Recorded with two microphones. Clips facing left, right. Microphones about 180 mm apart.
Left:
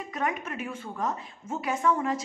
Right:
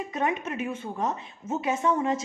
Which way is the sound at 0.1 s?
25° right (ahead or behind).